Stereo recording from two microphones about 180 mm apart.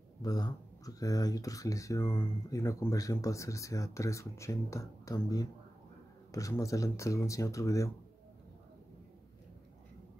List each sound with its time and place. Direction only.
0.2 s speech: 20° left (ahead or behind)